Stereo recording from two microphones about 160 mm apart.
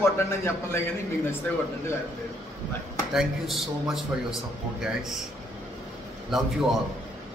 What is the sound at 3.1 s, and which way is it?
Speech, centre (ahead or behind).